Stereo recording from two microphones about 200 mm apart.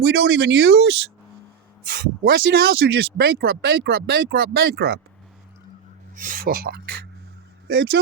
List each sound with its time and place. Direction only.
0.0 s speech: 55° right (ahead or behind)
1.9 s speech: 45° right (ahead or behind)
6.1 s speech: 40° right (ahead or behind)